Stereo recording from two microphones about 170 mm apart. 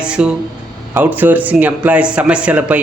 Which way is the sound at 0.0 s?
5° right (ahead or behind).